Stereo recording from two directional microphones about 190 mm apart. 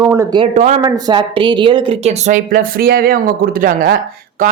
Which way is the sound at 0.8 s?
20° right (ahead or behind).